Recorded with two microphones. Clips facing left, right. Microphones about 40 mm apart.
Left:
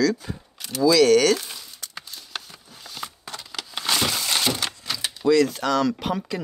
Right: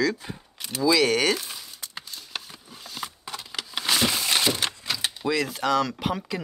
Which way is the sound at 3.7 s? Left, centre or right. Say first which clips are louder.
Even; centre.